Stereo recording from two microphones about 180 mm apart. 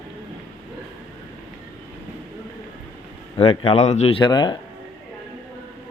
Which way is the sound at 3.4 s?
30° left (ahead or behind).